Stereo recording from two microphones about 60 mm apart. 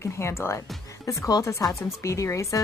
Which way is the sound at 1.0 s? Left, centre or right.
Left.